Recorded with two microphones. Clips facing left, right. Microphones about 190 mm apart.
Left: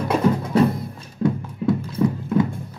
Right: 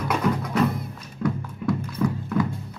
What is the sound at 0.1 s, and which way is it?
Music, 30° left (ahead or behind).